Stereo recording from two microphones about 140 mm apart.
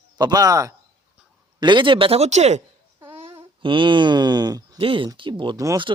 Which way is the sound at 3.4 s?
35° right (ahead or behind).